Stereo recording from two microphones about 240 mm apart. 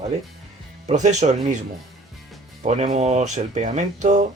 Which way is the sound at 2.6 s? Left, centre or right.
Right.